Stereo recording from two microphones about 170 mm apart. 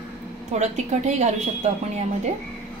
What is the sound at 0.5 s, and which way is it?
Speech, 40° right (ahead or behind).